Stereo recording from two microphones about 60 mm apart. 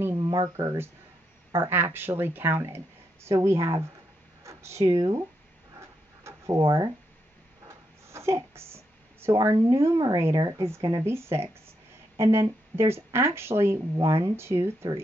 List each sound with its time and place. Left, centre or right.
0.1 s a sound: right
0.6 s speech: right
3.5 s speech: right
4.4 s a sound: right
4.9 s speech: right
6.2 s a sound: right
9.7 s speech: right
14.0 s speech: right
14.3 s speech: right